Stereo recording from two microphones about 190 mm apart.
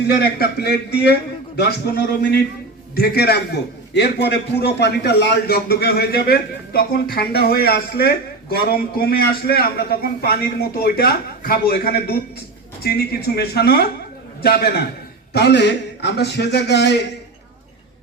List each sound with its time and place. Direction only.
0.1 s a man's voice: 55° left (ahead or behind)